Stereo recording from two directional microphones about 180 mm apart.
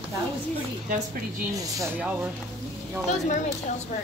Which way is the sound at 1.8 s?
5° right (ahead or behind).